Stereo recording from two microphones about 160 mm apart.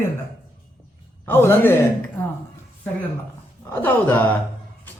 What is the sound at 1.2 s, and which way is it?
Speech, 15° left (ahead or behind).